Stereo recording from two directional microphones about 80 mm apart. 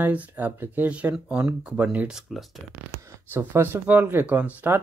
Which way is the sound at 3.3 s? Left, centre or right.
Right.